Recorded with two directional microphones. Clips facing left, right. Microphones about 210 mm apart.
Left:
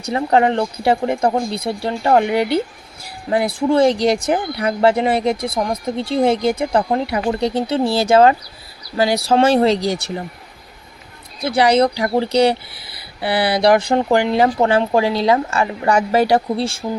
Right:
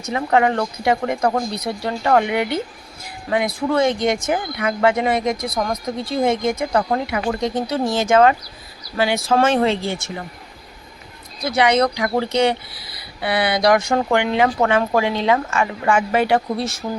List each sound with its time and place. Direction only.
0.0 s speech: 35° left (ahead or behind)
11.4 s speech: 30° left (ahead or behind)